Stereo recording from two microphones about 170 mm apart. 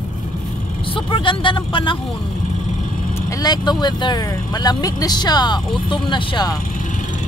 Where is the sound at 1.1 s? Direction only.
30° left (ahead or behind).